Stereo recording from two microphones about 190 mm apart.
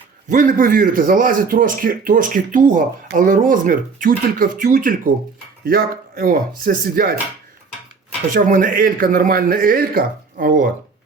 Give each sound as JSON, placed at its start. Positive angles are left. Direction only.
{"t": 0.3, "sound": "speech", "side_deg": -45}
{"t": 8.3, "sound": "speech", "side_deg": -45}